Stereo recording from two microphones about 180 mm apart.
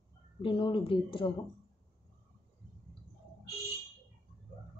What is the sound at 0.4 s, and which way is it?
Speech, 30° left (ahead or behind).